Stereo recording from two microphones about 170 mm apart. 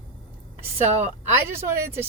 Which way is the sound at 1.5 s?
15° right (ahead or behind).